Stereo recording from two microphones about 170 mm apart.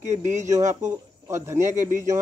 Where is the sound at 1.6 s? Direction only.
45° right (ahead or behind).